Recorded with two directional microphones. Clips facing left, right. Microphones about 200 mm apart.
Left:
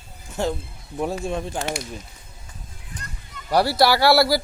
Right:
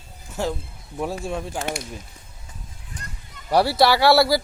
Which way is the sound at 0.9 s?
Centre (ahead or behind).